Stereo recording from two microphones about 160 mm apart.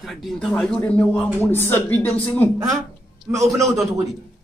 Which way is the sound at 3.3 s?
20° right (ahead or behind).